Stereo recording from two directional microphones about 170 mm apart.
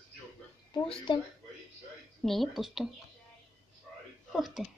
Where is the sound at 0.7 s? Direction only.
30° left (ahead or behind).